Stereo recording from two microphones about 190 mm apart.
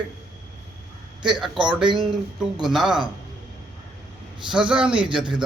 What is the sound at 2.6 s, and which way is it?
Speech, centre (ahead or behind).